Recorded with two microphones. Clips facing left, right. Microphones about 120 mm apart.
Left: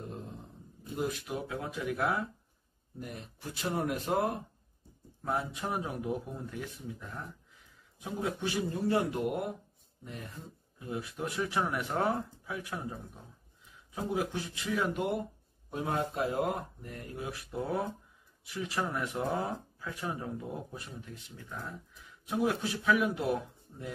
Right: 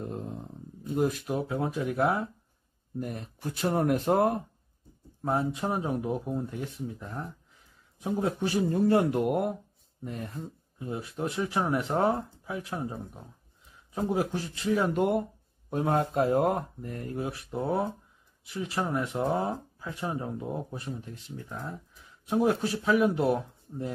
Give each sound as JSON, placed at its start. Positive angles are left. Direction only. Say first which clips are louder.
{"t": 1.2, "sound": "speech", "louder": "right 7 dB", "side_deg": -30}
{"t": 3.0, "sound": "speech", "louder": "right 8 dB", "side_deg": -50}
{"t": 5.2, "sound": "speech", "louder": "right 5 dB", "side_deg": -30}
{"t": 6.6, "sound": "speech", "louder": "right 5 dB", "side_deg": -35}
{"t": 8.7, "sound": "speech", "louder": "right 7 dB", "side_deg": -55}
{"t": 10.8, "sound": "speech", "louder": "right 4 dB", "side_deg": -30}
{"t": 13.9, "sound": "speech", "louder": "right 5 dB", "side_deg": -40}
{"t": 15.7, "sound": "speech", "louder": "right 6 dB", "side_deg": -50}
{"t": 17.2, "sound": "speech", "louder": "right 4 dB", "side_deg": -25}